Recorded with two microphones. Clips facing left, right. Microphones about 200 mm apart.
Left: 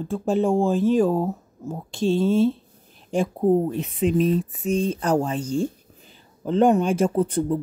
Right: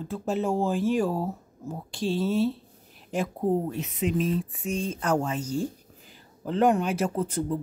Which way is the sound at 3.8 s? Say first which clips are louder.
Left 6 dB; 30° left (ahead or behind).